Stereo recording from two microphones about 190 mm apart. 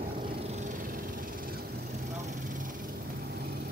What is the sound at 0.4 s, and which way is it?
Cat, 40° right (ahead or behind).